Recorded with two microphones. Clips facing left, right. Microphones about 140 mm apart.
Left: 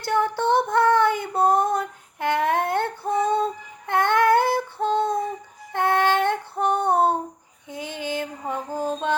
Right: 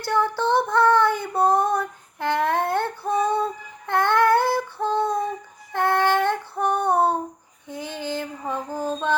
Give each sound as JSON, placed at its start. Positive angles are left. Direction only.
{"t": 0.0, "sound": "female singing", "side_deg": 20}